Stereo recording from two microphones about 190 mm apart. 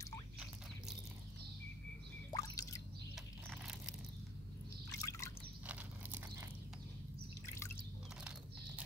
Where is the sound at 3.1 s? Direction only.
Centre (ahead or behind).